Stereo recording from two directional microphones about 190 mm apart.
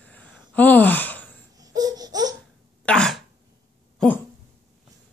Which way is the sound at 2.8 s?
5° left (ahead or behind).